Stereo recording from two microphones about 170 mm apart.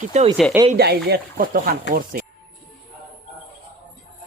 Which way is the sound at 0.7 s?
65° right (ahead or behind).